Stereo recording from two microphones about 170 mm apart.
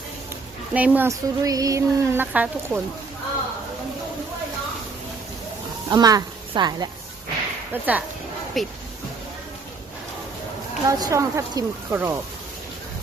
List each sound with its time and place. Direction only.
0.7 s speech: 10° right (ahead or behind)
5.9 s a woman's voice: 20° right (ahead or behind)
7.7 s speech: 10° right (ahead or behind)
10.8 s speech: 20° right (ahead or behind)